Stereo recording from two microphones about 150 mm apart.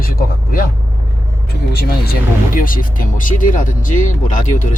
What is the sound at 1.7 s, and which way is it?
Speech, 80° left.